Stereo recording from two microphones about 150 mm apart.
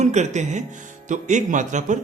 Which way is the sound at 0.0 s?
50° right (ahead or behind).